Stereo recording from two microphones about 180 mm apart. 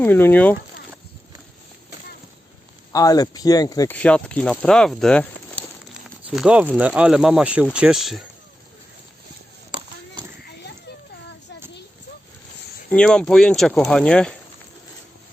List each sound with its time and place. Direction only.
0.0 s speech: 10° left (ahead or behind)
2.9 s speech: 20° left (ahead or behind)
3.9 s speech: 5° left (ahead or behind)
12.9 s speech: 5° left (ahead or behind)